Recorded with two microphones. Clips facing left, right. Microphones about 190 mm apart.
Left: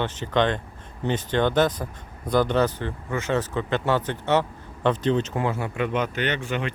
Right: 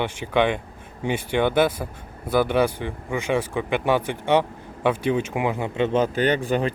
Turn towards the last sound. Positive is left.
turn(degrees=-35)  # may be behind; listen again after turning